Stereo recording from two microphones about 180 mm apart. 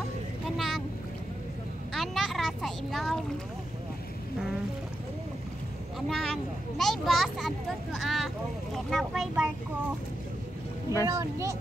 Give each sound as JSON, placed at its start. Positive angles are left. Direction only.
{"t": 0.6, "sound": "boat", "side_deg": 0}
{"t": 2.0, "sound": "a child's voice", "side_deg": 0}
{"t": 5.9, "sound": "a child's voice", "side_deg": 0}
{"t": 11.1, "sound": "speech", "side_deg": -15}